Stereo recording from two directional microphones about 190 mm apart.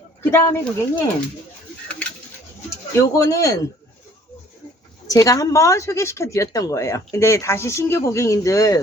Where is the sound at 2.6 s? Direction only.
15° left (ahead or behind).